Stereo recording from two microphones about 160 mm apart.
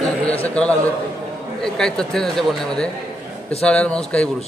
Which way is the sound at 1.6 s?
5° left (ahead or behind).